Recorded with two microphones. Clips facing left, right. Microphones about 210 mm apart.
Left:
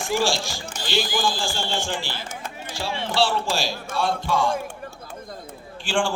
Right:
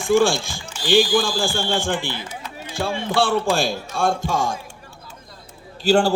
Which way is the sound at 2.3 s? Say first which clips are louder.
Even; 45° left (ahead or behind).